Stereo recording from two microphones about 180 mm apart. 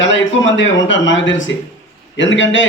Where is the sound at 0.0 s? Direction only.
90° left.